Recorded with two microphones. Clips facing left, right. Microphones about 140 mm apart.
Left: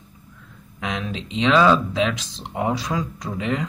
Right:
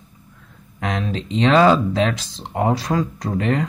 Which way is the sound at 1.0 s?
40° right (ahead or behind).